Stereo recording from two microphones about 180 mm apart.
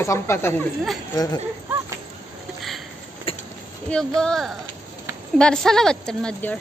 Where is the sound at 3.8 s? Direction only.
5° left (ahead or behind).